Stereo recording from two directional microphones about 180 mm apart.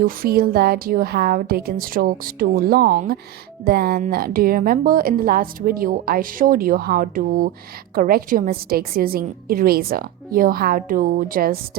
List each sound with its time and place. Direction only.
0.0 s a woman's voice: 55° right (ahead or behind)